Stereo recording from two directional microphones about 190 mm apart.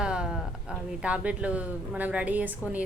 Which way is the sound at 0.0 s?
5° right (ahead or behind).